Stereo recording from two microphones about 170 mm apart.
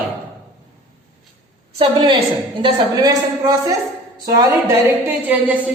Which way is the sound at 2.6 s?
20° right (ahead or behind).